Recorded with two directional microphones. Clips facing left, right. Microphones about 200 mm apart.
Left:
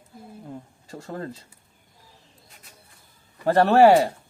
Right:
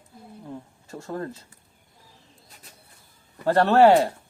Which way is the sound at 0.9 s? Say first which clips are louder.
Right 2 dB; 20° left (ahead or behind).